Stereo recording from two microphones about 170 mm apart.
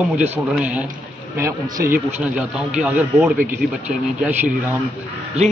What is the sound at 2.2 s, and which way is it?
Speech, 5° right (ahead or behind).